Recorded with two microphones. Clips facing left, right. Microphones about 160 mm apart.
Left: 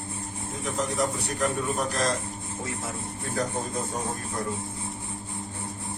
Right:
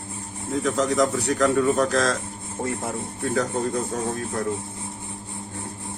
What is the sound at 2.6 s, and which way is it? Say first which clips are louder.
Speech: right 7 dB; 55° right (ahead or behind).